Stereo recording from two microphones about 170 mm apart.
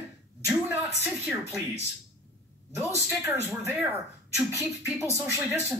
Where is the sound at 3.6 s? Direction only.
5° right (ahead or behind).